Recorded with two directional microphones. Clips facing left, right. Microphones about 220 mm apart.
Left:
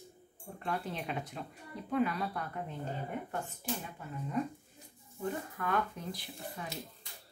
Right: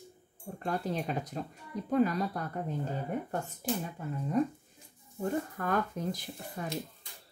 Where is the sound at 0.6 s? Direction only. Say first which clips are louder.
Right 4 dB; 40° right (ahead or behind).